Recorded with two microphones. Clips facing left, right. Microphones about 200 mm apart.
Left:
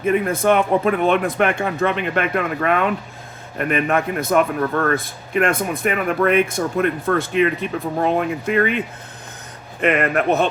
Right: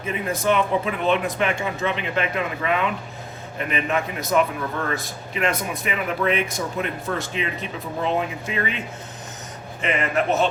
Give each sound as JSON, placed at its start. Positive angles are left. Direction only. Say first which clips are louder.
{"t": 0.0, "sound": "a man's voice", "louder": "left 7 dB", "side_deg": 55}
{"t": 9.8, "sound": "a man's voice", "louder": "left 5 dB", "side_deg": 60}